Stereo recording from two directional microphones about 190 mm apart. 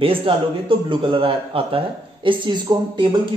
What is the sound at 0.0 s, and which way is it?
A man's voice, 30° right (ahead or behind).